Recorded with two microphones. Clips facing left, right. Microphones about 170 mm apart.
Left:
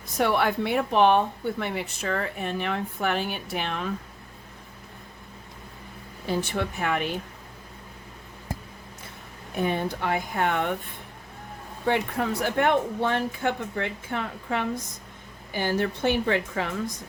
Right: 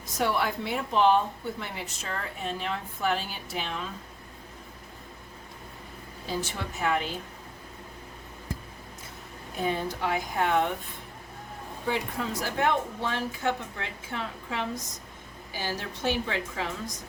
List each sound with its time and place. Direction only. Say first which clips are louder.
0.2 s a woman's voice: left 4 dB; 60° left (ahead or behind)
6.2 s a woman's voice: left 6 dB; 60° left (ahead or behind)
9.6 s a woman's voice: left 3 dB; 60° left (ahead or behind)
11.9 s a woman's voice: left 5 dB; 65° left (ahead or behind)